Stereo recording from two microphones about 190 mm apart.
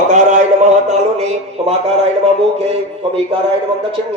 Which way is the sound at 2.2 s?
35° right (ahead or behind).